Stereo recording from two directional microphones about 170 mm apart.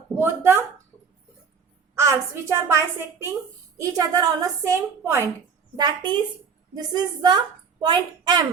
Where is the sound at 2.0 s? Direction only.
15° right (ahead or behind).